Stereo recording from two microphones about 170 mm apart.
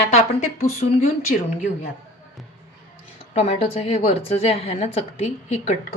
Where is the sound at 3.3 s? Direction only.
40° left (ahead or behind).